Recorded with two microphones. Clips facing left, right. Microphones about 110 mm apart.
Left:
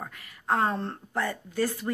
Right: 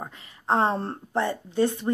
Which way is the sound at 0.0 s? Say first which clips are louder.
Right 2 dB; 25° right (ahead or behind).